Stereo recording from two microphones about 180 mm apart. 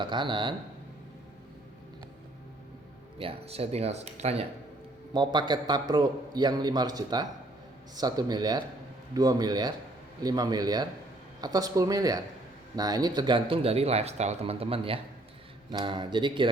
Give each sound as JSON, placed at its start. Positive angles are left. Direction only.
{"t": 0.0, "sound": "a man's voice", "side_deg": -25}
{"t": 3.2, "sound": "speech", "side_deg": -35}
{"t": 5.1, "sound": "a man's voice", "side_deg": -25}